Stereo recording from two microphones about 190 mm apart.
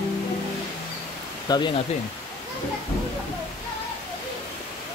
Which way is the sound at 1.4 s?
25° left (ahead or behind).